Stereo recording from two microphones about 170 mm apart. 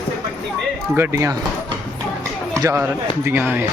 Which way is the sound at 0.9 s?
15° right (ahead or behind).